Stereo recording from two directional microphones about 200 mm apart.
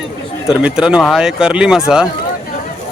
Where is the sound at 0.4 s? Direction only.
5° right (ahead or behind).